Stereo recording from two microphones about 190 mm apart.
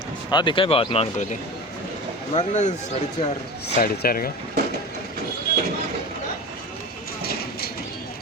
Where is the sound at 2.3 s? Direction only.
40° left (ahead or behind).